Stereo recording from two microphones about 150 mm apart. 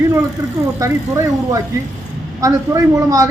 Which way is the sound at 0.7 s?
20° right (ahead or behind).